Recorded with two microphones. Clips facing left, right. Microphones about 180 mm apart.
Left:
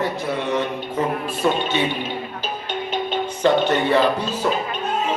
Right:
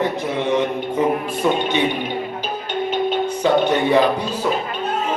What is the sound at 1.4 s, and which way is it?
Speech, 5° right (ahead or behind).